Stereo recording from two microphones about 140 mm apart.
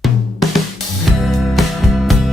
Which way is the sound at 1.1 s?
Centre (ahead or behind).